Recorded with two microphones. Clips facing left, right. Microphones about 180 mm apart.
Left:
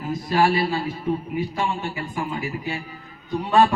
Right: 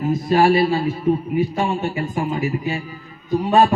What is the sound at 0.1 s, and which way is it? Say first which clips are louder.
A man's voice: right 4 dB; 25° right (ahead or behind).